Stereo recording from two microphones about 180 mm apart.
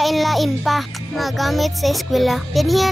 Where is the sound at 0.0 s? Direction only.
Centre (ahead or behind).